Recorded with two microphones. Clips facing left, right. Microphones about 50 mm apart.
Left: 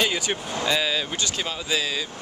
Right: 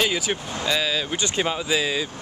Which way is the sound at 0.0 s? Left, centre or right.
Centre.